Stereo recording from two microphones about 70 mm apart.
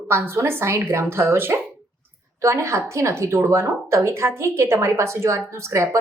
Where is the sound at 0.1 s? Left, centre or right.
Right.